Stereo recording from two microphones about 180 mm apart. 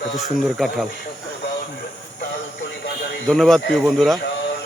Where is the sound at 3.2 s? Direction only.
Centre (ahead or behind).